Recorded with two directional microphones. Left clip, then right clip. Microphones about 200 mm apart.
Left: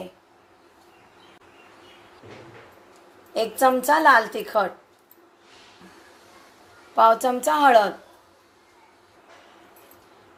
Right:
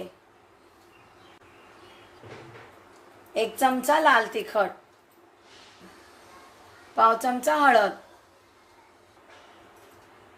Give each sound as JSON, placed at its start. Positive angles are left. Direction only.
{"t": 3.3, "sound": "a woman's voice", "side_deg": 15}
{"t": 6.9, "sound": "a woman's voice", "side_deg": 15}